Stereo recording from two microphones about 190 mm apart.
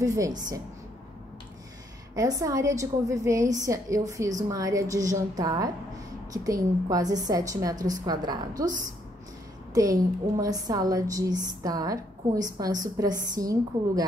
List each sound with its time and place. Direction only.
0.0 s a woman's voice: 15° right (ahead or behind)
2.1 s a woman's voice: 15° right (ahead or behind)
9.8 s a woman's voice: 20° right (ahead or behind)